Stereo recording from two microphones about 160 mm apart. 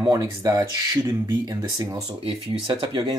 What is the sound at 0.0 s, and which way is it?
Speech, 20° right (ahead or behind).